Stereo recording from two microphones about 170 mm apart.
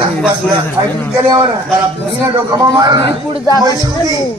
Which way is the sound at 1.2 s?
30° right (ahead or behind).